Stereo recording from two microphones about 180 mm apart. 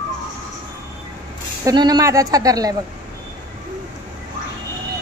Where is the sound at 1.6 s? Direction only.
20° right (ahead or behind).